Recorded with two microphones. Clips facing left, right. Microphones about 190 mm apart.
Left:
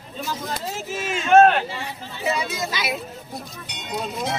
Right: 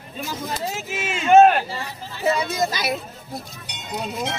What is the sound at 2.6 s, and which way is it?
Speech, 40° right (ahead or behind).